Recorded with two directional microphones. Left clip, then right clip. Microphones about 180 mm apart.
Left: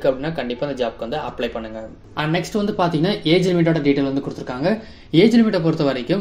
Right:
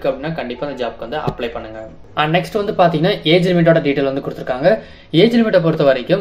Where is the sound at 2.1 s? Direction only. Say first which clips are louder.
Right 6 dB; 25° left (ahead or behind).